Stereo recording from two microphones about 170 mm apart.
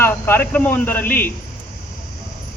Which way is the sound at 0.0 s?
15° left (ahead or behind).